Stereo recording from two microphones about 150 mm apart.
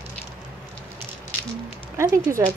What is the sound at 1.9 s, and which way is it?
Speech, 25° right (ahead or behind).